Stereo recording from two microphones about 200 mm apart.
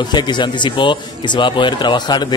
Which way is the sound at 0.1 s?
20° left (ahead or behind).